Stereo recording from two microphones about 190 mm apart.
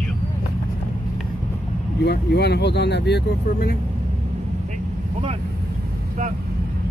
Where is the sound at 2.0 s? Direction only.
60° left (ahead or behind).